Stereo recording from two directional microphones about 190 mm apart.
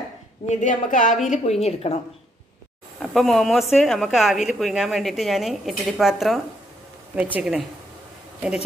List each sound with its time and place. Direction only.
0.5 s a woman's voice: 45° left (ahead or behind)
3.0 s a woman's voice: centre (ahead or behind)